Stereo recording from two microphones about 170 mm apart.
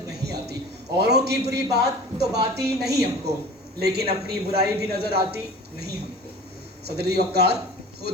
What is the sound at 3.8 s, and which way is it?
A man's voice, 70° right (ahead or behind).